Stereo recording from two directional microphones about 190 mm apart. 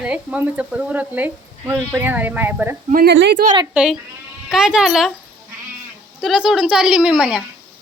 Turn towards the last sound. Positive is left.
turn(degrees=-5)  # may be behind; listen again after turning